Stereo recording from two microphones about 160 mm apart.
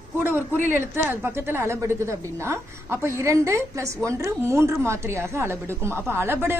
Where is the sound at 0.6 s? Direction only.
10° right (ahead or behind).